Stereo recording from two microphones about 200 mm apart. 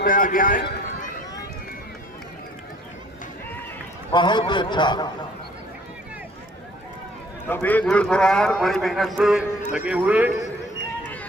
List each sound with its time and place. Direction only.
0.0 s a man's voice: 45° left (ahead or behind)
4.1 s a man's voice: 25° left (ahead or behind)
7.4 s a man's voice: 10° left (ahead or behind); by 10.3 s 5° right (ahead or behind)
11.0 s a sound: 10° left (ahead or behind)